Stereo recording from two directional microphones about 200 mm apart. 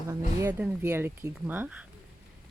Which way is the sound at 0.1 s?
10° right (ahead or behind).